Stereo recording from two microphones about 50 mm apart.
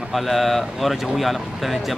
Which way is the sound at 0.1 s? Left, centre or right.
Centre.